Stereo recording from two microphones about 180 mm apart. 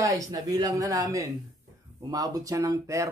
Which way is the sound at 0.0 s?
20° right (ahead or behind).